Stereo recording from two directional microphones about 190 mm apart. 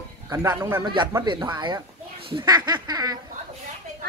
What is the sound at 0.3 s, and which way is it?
A man's voice, 20° right (ahead or behind).